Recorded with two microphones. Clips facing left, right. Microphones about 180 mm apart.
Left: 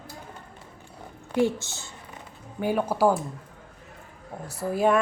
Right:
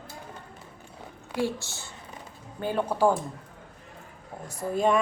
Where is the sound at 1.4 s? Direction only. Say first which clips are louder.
Left 5 dB; 20° left (ahead or behind).